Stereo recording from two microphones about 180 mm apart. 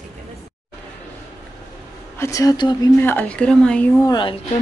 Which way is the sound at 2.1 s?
15° left (ahead or behind).